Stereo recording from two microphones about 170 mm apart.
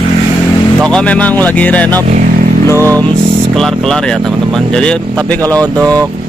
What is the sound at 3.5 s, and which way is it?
Speech, centre (ahead or behind).